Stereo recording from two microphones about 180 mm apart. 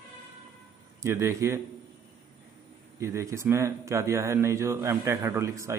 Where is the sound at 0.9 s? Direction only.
15° right (ahead or behind).